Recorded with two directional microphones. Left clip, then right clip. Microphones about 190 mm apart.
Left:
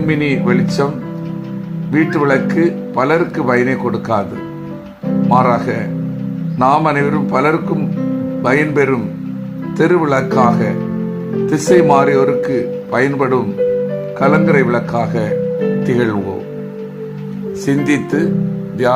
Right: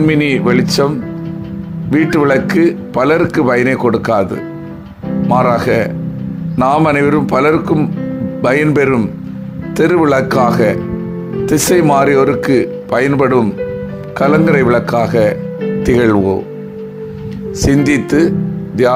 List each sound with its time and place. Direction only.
0.1 s speech: 40° right (ahead or behind)
1.9 s speech: 40° right (ahead or behind)
5.3 s speech: 45° right (ahead or behind)
17.7 s speech: 35° right (ahead or behind)